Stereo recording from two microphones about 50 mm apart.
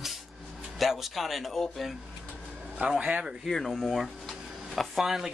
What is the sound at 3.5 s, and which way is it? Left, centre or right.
Speech, centre.